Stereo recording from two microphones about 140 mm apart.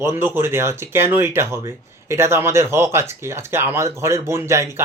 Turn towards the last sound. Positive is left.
turn(degrees=-20)  # may be behind; listen again after turning